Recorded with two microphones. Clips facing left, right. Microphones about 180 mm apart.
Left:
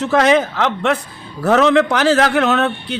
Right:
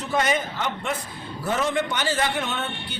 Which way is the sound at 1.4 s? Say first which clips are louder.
Left 12 dB; 75° left (ahead or behind).